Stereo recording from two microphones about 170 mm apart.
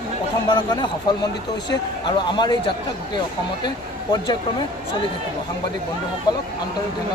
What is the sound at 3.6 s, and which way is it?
Speech, 25° left (ahead or behind).